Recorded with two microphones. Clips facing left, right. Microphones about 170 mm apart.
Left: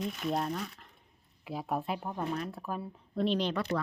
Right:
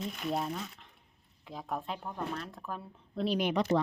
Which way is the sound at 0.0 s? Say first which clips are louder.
Left 2 dB; 5° right (ahead or behind).